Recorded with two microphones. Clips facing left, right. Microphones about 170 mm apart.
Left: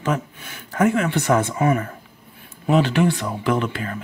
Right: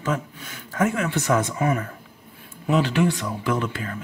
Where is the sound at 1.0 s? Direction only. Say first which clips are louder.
Left 3 dB; 60° left (ahead or behind).